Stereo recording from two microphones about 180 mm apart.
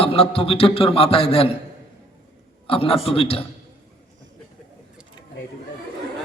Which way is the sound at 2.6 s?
30° left (ahead or behind).